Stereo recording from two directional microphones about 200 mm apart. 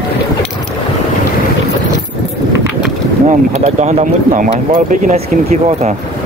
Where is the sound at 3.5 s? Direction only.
35° right (ahead or behind).